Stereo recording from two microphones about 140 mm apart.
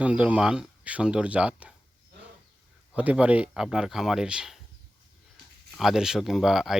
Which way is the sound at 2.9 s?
10° right (ahead or behind).